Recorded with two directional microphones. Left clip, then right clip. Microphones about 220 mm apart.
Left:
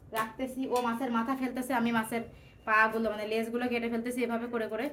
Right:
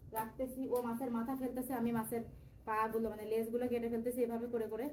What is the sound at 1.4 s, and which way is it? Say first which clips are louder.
A woman's voice: left 8 dB; 15° left (ahead or behind).